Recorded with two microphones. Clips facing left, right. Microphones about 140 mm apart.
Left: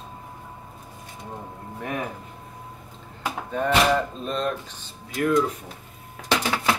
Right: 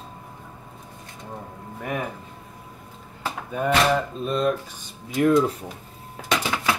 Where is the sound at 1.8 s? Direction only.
Centre (ahead or behind).